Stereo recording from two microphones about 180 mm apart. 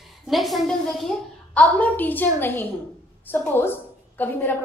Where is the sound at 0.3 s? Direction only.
Centre (ahead or behind).